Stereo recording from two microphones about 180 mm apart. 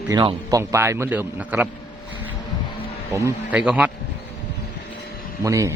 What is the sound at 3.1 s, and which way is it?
Speech, 15° right (ahead or behind).